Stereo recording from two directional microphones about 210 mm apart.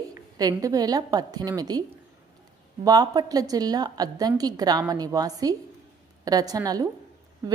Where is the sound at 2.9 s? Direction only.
20° right (ahead or behind).